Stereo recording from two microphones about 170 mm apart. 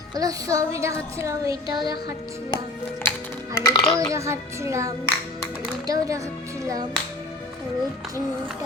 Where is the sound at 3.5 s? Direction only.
25° left (ahead or behind).